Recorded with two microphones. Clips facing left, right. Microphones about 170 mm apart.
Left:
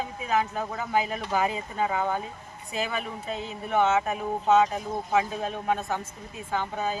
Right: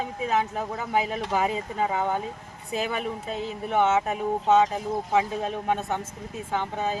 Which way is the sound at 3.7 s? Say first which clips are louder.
Right 1 dB; 25° right (ahead or behind).